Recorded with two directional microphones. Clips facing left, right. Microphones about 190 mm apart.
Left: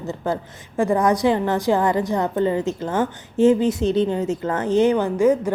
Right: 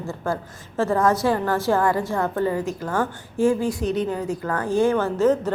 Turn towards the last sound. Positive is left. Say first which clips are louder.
# left 2 dB
turn(degrees=10)  # may be behind; listen again after turning